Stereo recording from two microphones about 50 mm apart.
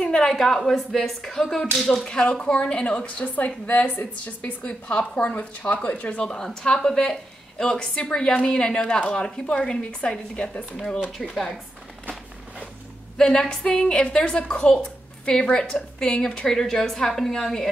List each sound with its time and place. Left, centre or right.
0.0 s a sound: centre
0.3 s a woman's voice: centre; by 6.2 s left
6.2 s a woman's voice: centre
13.2 s a woman's voice: centre